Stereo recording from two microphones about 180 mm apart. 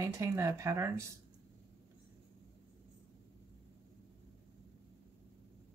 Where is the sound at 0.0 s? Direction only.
15° right (ahead or behind).